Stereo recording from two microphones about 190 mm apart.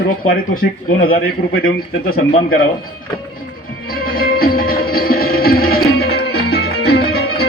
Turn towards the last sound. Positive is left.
turn(degrees=60)  # may be behind; listen again after turning